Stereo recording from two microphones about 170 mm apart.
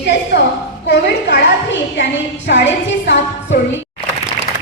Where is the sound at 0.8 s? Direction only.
75° left (ahead or behind); by 3.1 s 90° left.